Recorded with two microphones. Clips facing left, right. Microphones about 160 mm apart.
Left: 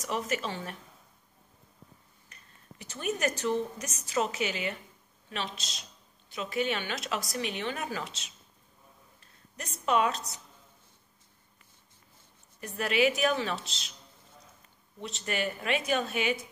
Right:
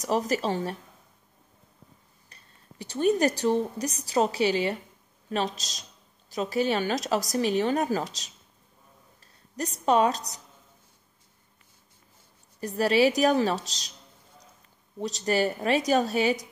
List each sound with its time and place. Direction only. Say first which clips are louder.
0.0 s a man's voice: right 6 dB; 35° right (ahead or behind)
2.2 s a man's voice: even; 35° right (ahead or behind)
12.5 s a man's voice: right 6 dB; 35° right (ahead or behind)
15.0 s a man's voice: right 8 dB; 35° right (ahead or behind)